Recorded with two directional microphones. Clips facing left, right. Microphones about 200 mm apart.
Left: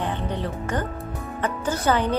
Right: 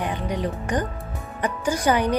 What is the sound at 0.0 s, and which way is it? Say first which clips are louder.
Speech: right 1 dB; 10° right (ahead or behind).